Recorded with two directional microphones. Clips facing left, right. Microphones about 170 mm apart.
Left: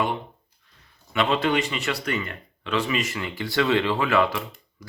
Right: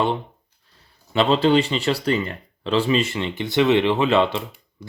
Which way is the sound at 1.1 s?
30° right (ahead or behind).